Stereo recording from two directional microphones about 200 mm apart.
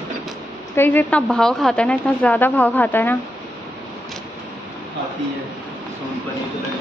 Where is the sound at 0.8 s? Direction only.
10° left (ahead or behind).